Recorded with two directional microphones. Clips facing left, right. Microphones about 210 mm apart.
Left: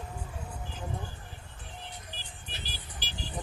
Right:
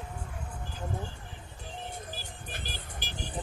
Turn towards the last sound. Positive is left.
turn(degrees=-50)  # may be behind; listen again after turning